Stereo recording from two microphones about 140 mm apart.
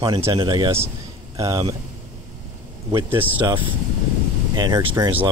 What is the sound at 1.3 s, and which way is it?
Speech, 25° right (ahead or behind).